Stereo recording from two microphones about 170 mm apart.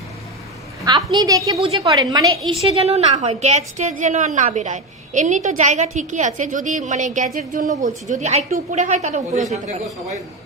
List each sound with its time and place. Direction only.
1.1 s a woman's voice: 20° right (ahead or behind)
2.5 s a woman's voice: 35° right (ahead or behind)